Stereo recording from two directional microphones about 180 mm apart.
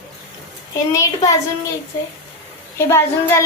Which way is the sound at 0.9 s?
20° left (ahead or behind).